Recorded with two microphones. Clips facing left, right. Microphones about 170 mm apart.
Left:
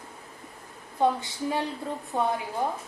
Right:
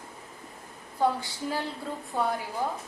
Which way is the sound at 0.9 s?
20° left (ahead or behind).